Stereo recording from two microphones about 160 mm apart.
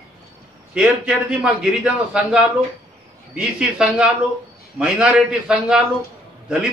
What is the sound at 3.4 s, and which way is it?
A man's voice, 5° right (ahead or behind).